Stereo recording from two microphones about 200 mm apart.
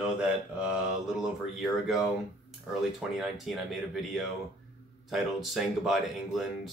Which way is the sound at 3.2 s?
Centre (ahead or behind).